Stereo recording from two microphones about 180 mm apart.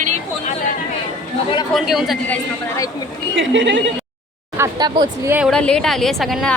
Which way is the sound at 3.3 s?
90° right.